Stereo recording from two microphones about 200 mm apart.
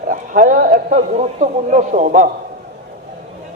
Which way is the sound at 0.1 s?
45° right (ahead or behind).